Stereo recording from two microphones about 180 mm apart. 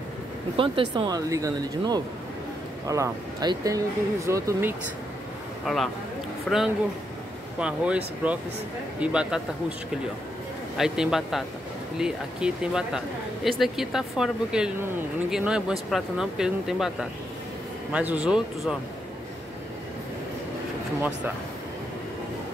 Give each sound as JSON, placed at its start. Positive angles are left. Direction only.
{"t": 0.6, "sound": "speech", "side_deg": -25}
{"t": 6.5, "sound": "speech", "side_deg": 5}
{"t": 7.5, "sound": "speech", "side_deg": -5}
{"t": 10.8, "sound": "speech", "side_deg": 0}